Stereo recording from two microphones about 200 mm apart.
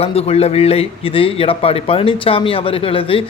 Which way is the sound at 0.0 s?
30° left (ahead or behind).